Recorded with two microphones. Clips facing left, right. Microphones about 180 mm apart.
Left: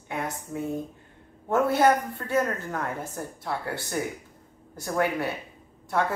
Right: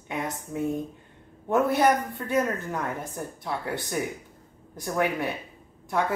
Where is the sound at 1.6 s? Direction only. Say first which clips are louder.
Left 1 dB; 20° right (ahead or behind).